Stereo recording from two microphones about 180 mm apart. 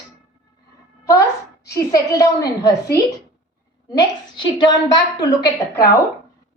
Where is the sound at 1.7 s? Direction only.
20° left (ahead or behind).